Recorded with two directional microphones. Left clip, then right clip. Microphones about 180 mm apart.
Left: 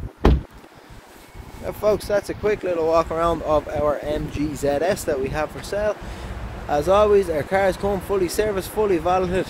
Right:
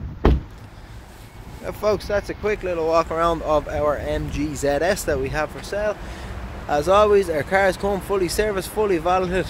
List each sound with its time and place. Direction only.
1.7 s speech: 10° left (ahead or behind)
5.6 s speech: 15° left (ahead or behind)
6.7 s speech: 5° left (ahead or behind)